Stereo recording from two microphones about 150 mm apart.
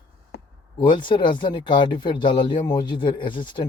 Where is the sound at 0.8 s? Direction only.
30° left (ahead or behind).